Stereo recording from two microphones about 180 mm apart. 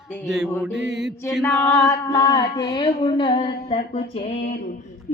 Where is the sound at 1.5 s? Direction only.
15° left (ahead or behind); by 4.0 s 30° left (ahead or behind).